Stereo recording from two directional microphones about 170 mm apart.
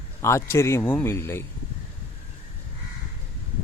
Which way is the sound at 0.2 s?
15° left (ahead or behind).